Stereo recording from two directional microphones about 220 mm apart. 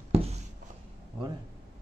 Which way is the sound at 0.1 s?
25° right (ahead or behind).